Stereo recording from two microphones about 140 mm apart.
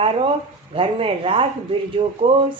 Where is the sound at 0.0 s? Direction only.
40° right (ahead or behind).